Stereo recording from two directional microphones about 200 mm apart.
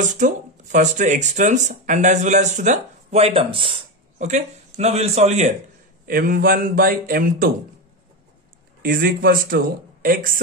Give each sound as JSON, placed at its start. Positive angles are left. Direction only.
{"t": 0.0, "sound": "speech", "side_deg": -40}
{"t": 6.0, "sound": "speech", "side_deg": -45}
{"t": 8.8, "sound": "speech", "side_deg": -45}